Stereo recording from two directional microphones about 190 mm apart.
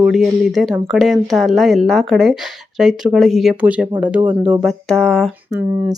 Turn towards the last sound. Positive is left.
turn(degrees=-20)  # may be behind; listen again after turning